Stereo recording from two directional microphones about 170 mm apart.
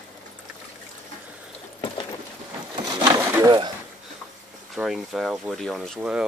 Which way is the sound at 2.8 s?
25° right (ahead or behind).